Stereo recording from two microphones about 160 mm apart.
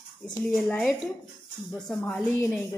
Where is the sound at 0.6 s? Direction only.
5° left (ahead or behind).